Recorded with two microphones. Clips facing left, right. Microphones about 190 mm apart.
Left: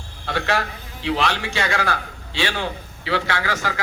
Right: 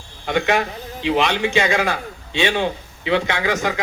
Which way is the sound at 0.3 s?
20° right (ahead or behind).